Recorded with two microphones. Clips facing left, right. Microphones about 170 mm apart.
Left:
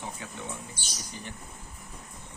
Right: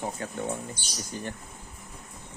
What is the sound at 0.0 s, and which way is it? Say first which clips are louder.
Speech: right 7 dB; 45° right (ahead or behind).